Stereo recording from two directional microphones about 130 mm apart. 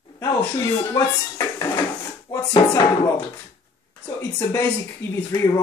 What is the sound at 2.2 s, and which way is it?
Speech, 25° left (ahead or behind).